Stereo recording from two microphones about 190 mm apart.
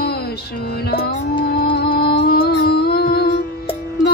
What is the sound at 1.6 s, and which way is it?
Music, 50° left (ahead or behind).